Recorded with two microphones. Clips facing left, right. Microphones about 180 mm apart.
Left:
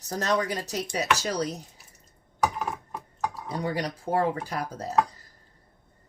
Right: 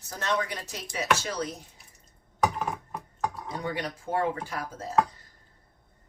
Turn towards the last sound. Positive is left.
turn(degrees=40)  # may be behind; listen again after turning